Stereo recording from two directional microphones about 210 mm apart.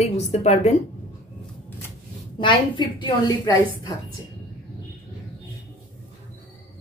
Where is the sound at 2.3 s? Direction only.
20° left (ahead or behind).